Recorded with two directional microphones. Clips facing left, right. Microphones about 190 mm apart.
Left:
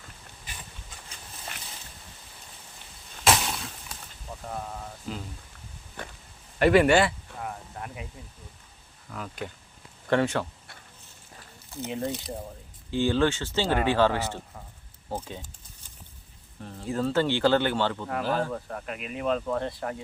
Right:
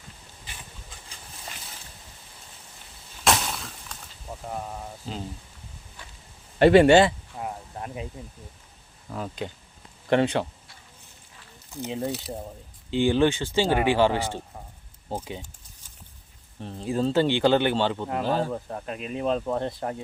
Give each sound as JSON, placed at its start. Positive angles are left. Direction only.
{"t": 3.2, "sound": "a sound", "side_deg": 0}
{"t": 4.4, "sound": "speech", "side_deg": -10}
{"t": 5.1, "sound": "speech", "side_deg": -30}
{"t": 6.6, "sound": "a sound", "side_deg": -30}
{"t": 9.0, "sound": "speech", "side_deg": -25}
{"t": 12.0, "sound": "speech", "side_deg": -5}
{"t": 12.9, "sound": "speech", "side_deg": -15}
{"t": 16.6, "sound": "speech", "side_deg": -20}